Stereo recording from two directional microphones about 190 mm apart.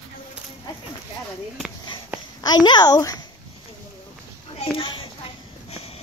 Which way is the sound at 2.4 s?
20° left (ahead or behind).